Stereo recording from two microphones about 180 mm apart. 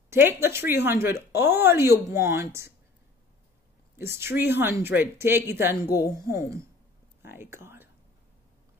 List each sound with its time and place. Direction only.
0.1 s speech: 10° right (ahead or behind)
4.0 s speech: 15° right (ahead or behind)